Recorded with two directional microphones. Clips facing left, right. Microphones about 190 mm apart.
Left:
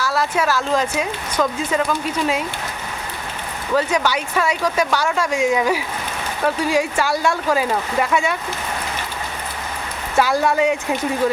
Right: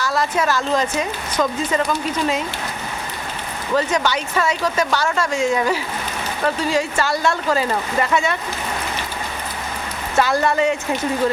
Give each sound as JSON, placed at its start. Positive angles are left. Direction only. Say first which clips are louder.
{"t": 0.0, "sound": "a woman's voice", "louder": "even", "side_deg": 5}
{"t": 3.8, "sound": "speech", "louder": "even", "side_deg": 10}
{"t": 10.2, "sound": "speech", "louder": "left 1 dB", "side_deg": 10}